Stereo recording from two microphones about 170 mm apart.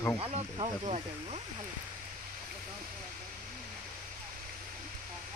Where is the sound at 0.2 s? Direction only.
35° right (ahead or behind).